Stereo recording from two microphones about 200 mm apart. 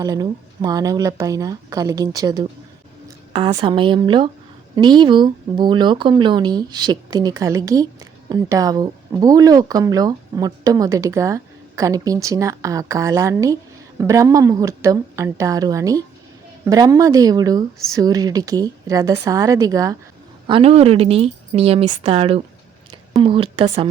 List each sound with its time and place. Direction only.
0.0 s speech: 20° right (ahead or behind)
20.5 s speech: 30° right (ahead or behind)